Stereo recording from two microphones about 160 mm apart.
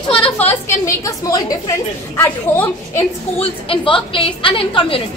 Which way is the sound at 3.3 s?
35° left (ahead or behind).